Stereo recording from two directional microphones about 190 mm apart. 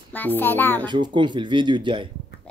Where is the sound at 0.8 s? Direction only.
25° right (ahead or behind).